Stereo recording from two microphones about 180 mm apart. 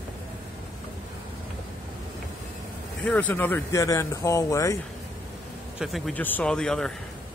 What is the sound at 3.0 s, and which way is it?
Speech, 10° left (ahead or behind).